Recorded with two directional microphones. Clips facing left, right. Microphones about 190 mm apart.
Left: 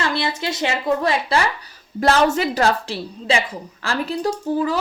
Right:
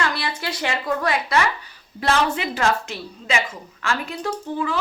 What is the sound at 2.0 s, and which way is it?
A woman's voice, 45° left (ahead or behind).